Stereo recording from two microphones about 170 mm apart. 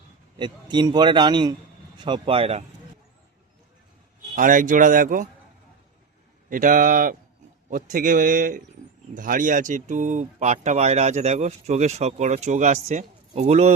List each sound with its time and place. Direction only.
0.3 s a man's voice: 25° right (ahead or behind)
4.4 s speech: 50° right (ahead or behind)
6.5 s speech: 50° right (ahead or behind)